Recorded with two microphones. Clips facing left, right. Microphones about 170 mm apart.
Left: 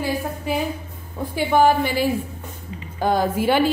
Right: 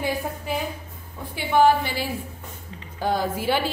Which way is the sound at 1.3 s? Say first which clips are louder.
Left 2 dB; 45° left (ahead or behind).